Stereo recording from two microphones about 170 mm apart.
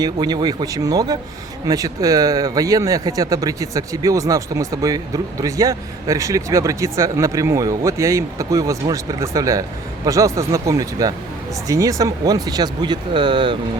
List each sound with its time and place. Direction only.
0.0 s speech: 25° right (ahead or behind)